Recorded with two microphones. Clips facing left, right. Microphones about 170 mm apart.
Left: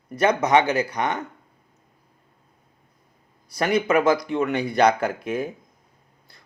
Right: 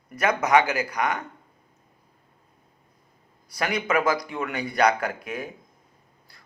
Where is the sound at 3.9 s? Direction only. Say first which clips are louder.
Left 5 dB; 25° left (ahead or behind).